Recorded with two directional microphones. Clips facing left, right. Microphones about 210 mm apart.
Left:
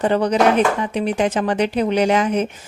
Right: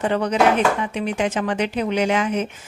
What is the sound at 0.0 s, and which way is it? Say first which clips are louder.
Speech: left 2 dB; 35° left (ahead or behind).